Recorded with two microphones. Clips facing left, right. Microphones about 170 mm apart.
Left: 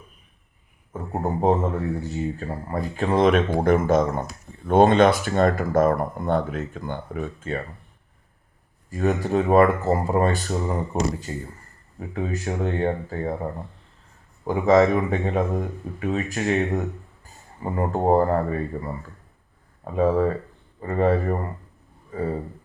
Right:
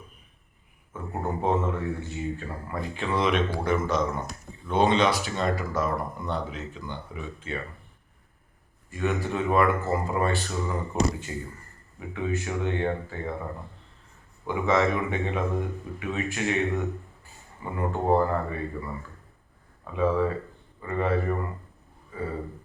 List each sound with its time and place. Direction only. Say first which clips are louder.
0.9 s speech: left 5 dB; 35° left (ahead or behind)
8.9 s a man's voice: left 5 dB; 40° left (ahead or behind)
22.1 s a sound: left 6 dB; 40° left (ahead or behind)